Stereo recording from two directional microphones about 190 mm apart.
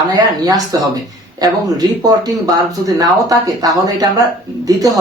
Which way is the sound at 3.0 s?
20° right (ahead or behind).